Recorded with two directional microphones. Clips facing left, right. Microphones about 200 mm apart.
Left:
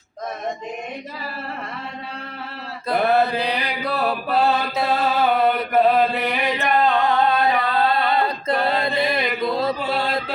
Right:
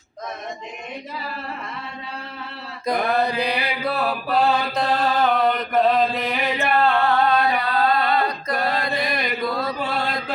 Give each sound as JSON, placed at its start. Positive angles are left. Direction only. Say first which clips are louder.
{"t": 2.8, "sound": "mantra", "louder": "left 2 dB", "side_deg": -15}
{"t": 9.4, "sound": "chant", "louder": "left 4 dB", "side_deg": 25}